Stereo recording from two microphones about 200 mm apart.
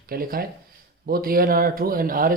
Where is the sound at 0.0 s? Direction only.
45° right (ahead or behind).